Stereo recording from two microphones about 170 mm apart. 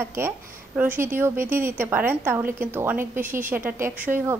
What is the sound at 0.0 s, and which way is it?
A woman's voice, 15° right (ahead or behind).